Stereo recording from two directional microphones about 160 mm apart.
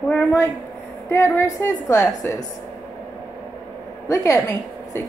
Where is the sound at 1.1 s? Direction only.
15° left (ahead or behind).